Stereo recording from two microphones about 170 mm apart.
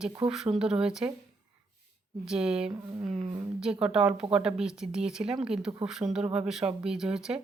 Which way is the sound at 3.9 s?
5° right (ahead or behind).